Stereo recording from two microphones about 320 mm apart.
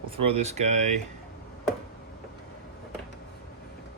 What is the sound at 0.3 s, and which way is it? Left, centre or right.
Speech, right.